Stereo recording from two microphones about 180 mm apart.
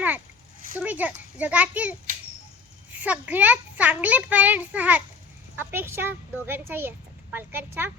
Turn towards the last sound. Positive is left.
turn(degrees=-10)  # may be behind; listen again after turning